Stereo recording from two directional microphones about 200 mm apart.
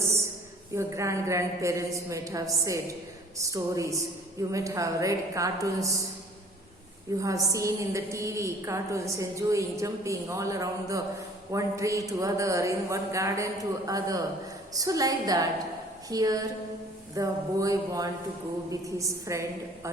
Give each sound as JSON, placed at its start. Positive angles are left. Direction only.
{"t": 0.8, "sound": "a woman's voice", "side_deg": -15}
{"t": 7.2, "sound": "a woman's voice", "side_deg": -15}